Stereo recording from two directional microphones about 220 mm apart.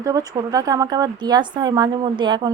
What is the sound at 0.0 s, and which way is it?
A woman's voice, 15° right (ahead or behind).